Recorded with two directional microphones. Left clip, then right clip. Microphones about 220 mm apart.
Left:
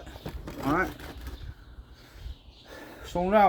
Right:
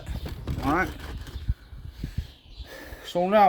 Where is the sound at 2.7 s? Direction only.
40° right (ahead or behind).